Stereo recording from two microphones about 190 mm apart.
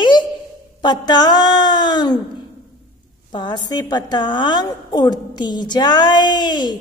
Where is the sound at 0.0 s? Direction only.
25° left (ahead or behind).